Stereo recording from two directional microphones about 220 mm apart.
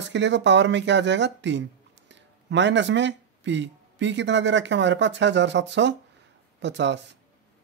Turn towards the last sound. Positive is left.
turn(degrees=-55)  # may be behind; listen again after turning